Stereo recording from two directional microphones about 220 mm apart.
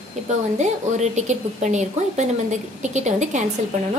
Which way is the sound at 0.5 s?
30° right (ahead or behind).